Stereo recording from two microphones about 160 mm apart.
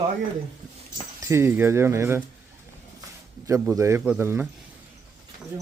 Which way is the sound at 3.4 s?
20° right (ahead or behind).